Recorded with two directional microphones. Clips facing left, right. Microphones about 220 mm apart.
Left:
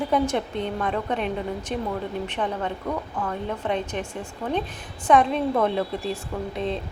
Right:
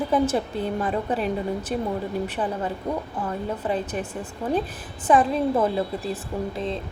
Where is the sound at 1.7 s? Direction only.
40° right (ahead or behind).